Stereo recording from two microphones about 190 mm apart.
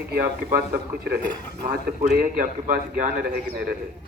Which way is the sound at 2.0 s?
50° right (ahead or behind).